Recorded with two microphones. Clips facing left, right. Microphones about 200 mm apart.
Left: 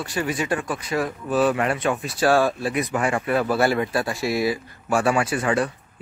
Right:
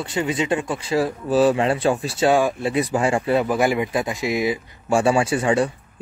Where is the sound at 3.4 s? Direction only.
15° right (ahead or behind).